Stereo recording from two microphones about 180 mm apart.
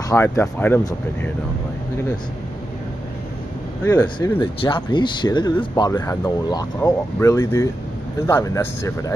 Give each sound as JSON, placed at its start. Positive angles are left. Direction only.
{"t": 0.1, "sound": "speech", "side_deg": 10}
{"t": 3.8, "sound": "speech", "side_deg": 15}